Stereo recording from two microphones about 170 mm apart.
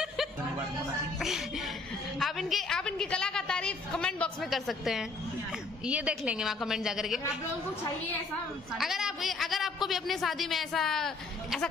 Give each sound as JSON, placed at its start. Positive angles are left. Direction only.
{"t": 2.1, "sound": "a sound", "side_deg": 0}
{"t": 5.9, "sound": "a man's voice", "side_deg": -5}
{"t": 8.7, "sound": "a man's voice", "side_deg": 0}